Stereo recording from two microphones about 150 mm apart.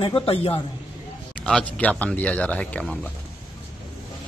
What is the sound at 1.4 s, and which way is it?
Speech, 5° left (ahead or behind).